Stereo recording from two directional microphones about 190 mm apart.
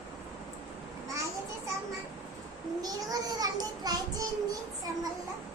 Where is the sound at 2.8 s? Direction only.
20° right (ahead or behind).